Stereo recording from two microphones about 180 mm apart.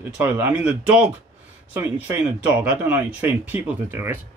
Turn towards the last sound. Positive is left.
turn(degrees=-10)  # may be behind; listen again after turning